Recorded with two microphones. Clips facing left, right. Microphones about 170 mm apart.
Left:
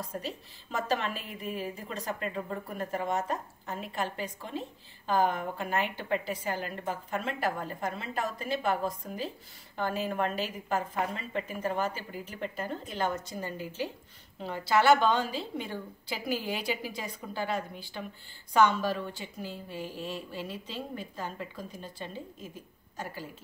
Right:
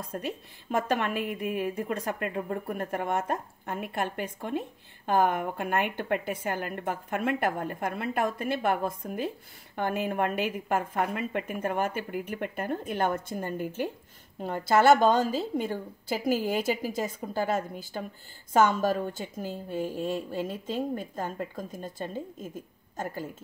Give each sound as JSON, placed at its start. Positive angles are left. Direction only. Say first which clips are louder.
{"t": 0.2, "sound": "a woman's voice", "louder": "right 4 dB", "side_deg": -55}